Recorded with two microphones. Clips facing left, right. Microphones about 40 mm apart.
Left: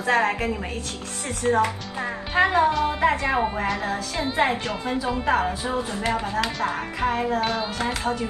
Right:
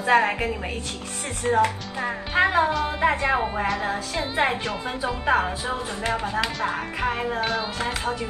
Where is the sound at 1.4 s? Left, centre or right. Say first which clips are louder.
Left 1 dB; centre.